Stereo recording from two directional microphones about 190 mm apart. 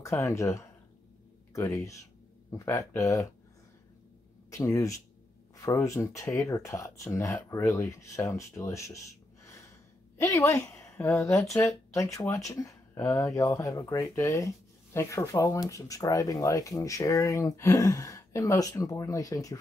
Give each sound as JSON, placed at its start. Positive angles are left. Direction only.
{"t": 0.0, "sound": "speech", "side_deg": 15}
{"t": 4.5, "sound": "speech", "side_deg": 15}
{"t": 10.1, "sound": "a woman's voice", "side_deg": 15}